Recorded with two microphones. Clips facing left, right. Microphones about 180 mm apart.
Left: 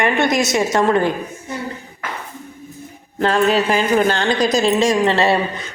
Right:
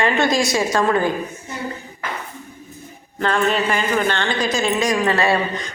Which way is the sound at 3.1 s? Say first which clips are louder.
Left 4 dB; 35° left (ahead or behind).